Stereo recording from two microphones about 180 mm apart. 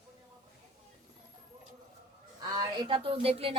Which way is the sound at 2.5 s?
30° right (ahead or behind).